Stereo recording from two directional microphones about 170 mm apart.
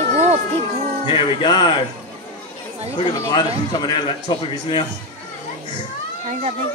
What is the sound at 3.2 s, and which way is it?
A man's voice, 25° left (ahead or behind).